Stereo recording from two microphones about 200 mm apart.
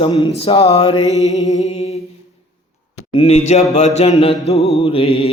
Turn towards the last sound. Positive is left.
turn(degrees=30)  # may be behind; listen again after turning